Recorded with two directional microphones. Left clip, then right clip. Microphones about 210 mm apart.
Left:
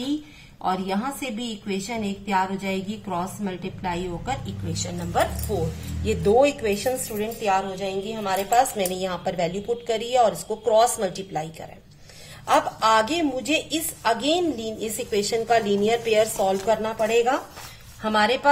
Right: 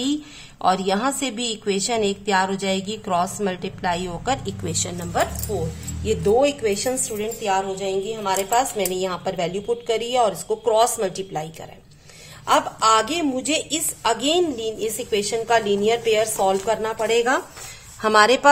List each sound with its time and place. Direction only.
0.6 s a woman's voice: 45° right (ahead or behind)
5.6 s a woman's voice: 5° right (ahead or behind); by 17.4 s 20° right (ahead or behind)
18.0 s speech: 35° right (ahead or behind)